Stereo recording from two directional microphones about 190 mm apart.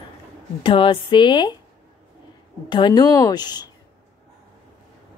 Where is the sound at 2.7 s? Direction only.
20° left (ahead or behind).